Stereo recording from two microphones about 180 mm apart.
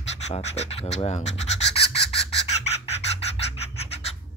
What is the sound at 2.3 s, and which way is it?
Bird, 35° left (ahead or behind).